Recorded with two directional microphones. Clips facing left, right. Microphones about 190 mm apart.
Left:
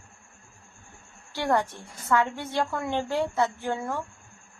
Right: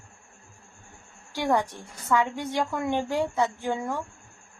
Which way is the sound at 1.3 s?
15° right (ahead or behind).